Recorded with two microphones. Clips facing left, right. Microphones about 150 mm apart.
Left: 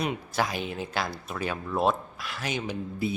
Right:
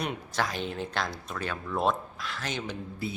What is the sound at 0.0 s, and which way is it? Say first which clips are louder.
Speech: left 3 dB; 5° left (ahead or behind).